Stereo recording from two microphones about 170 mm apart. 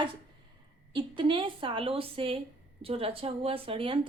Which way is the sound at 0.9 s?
30° right (ahead or behind).